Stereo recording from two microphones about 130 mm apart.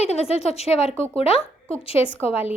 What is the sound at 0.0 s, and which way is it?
A woman's voice, 55° left (ahead or behind).